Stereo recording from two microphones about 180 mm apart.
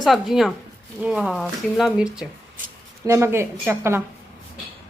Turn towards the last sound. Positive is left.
turn(degrees=-15)  # may be behind; listen again after turning